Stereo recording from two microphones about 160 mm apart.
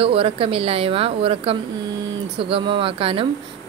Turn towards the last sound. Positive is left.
turn(degrees=-35)  # may be behind; listen again after turning